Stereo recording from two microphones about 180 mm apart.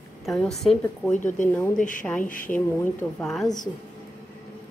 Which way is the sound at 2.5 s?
10° left (ahead or behind).